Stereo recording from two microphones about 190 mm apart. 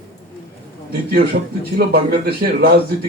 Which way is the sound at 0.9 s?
55° right (ahead or behind).